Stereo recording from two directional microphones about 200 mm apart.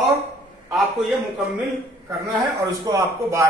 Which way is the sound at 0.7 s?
Centre (ahead or behind).